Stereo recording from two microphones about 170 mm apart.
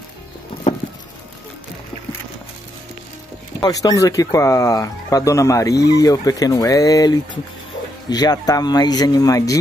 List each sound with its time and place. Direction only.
3.6 s speech: 20° left (ahead or behind)